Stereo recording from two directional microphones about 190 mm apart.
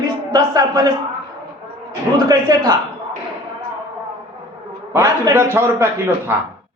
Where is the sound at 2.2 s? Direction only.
20° right (ahead or behind).